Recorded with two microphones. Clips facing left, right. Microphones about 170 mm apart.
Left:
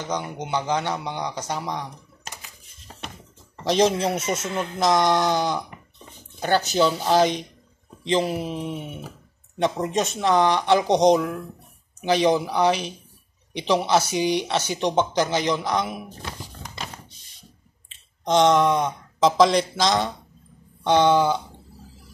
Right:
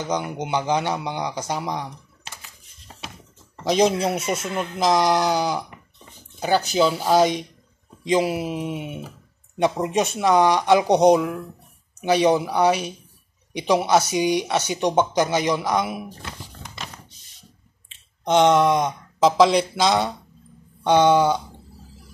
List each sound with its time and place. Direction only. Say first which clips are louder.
0.1 s a man's voice: right 2 dB; 15° right (ahead or behind)
2.3 s a sound: left 2 dB; 45° left (ahead or behind)
3.6 s a man's voice: right 1 dB; 10° right (ahead or behind)
12.4 s a man's voice: right 1 dB; 10° right (ahead or behind)
16.6 s a sound: left 2 dB; 35° left (ahead or behind)
18.3 s a man's voice: right 1 dB; 5° right (ahead or behind)